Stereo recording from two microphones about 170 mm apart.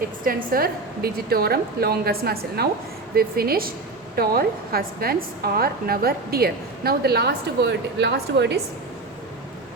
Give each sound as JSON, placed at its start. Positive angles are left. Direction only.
{"t": 0.3, "sound": "a woman's voice", "side_deg": -55}